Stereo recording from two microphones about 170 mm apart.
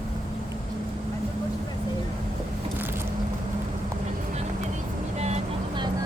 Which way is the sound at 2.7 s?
10° right (ahead or behind).